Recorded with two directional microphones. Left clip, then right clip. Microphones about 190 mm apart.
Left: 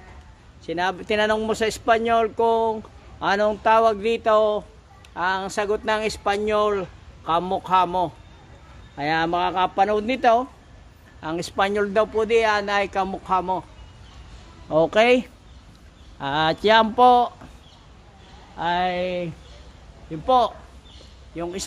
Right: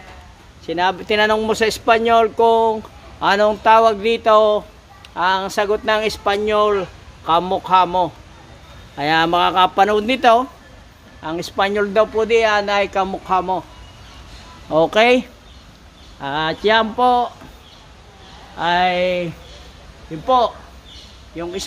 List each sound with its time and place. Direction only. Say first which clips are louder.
0.7 s speech: right 6 dB; 10° left (ahead or behind)
8.9 s speech: right 6 dB; centre (ahead or behind)
11.2 s speech: right 3 dB; 25° left (ahead or behind)
14.7 s speech: right 4 dB; 15° left (ahead or behind)
16.2 s speech: right 1 dB; 45° left (ahead or behind)
18.6 s speech: right 7 dB; 20° left (ahead or behind)
20.2 s speech: right 3 dB; 40° left (ahead or behind)
21.4 s speech: right 4 dB; 30° left (ahead or behind)